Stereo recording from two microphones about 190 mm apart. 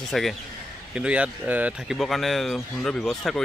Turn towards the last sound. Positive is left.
turn(degrees=0)  # may be behind; listen again after turning